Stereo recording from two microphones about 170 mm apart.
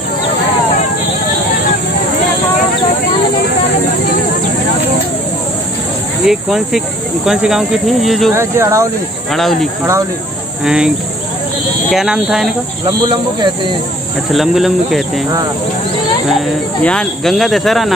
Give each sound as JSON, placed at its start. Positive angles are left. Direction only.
{"t": 6.2, "sound": "speech", "side_deg": 0}
{"t": 8.4, "sound": "speech", "side_deg": -15}
{"t": 9.3, "sound": "speech", "side_deg": 0}
{"t": 11.9, "sound": "speech", "side_deg": -5}
{"t": 14.3, "sound": "speech", "side_deg": 0}
{"t": 16.3, "sound": "speech", "side_deg": 0}